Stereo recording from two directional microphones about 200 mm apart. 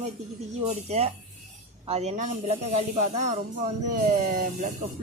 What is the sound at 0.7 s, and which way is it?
Speech, 35° right (ahead or behind).